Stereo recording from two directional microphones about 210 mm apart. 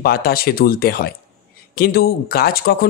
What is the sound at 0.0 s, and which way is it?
A man's voice, 45° left (ahead or behind).